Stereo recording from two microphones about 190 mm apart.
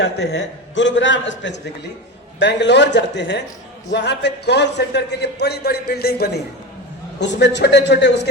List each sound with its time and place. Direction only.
0.0 s a man's voice: 65° left (ahead or behind)
7.2 s a man's voice: 65° left (ahead or behind)